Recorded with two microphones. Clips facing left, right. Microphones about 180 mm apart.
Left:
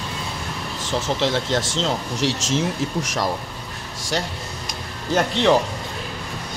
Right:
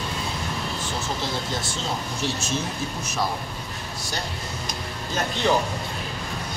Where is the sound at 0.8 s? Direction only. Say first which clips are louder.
Left 11 dB; 90° left.